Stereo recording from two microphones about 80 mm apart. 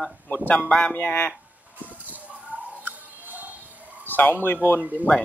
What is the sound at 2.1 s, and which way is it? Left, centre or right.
Music, centre.